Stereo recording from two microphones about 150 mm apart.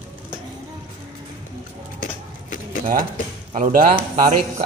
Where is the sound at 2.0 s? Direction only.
60° left (ahead or behind).